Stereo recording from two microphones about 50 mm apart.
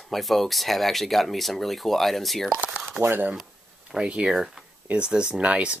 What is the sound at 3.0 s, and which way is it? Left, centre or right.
Speech, right.